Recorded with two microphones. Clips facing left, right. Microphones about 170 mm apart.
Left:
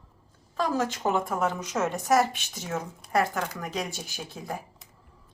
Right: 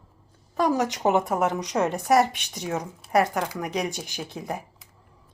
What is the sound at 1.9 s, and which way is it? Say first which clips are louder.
Speech: right 2 dB; 65° right (ahead or behind).